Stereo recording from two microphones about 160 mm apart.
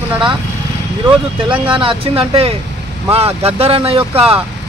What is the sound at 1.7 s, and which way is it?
Speech, 35° right (ahead or behind).